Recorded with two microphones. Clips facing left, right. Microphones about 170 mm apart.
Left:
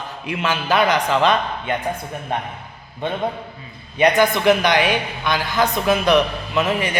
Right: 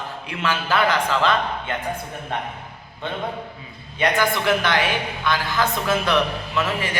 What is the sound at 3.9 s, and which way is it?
A man's voice, 20° left (ahead or behind).